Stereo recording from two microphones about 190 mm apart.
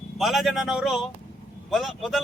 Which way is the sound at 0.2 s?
Centre (ahead or behind).